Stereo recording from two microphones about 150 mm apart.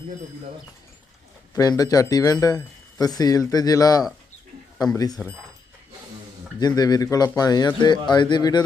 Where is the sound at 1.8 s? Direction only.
25° left (ahead or behind).